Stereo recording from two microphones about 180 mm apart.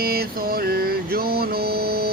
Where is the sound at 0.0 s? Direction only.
60° right (ahead or behind).